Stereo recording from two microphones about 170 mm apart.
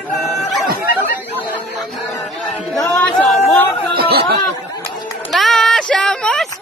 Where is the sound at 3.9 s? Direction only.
65° right (ahead or behind).